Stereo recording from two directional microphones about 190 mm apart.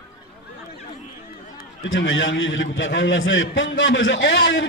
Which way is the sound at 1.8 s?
75° left (ahead or behind).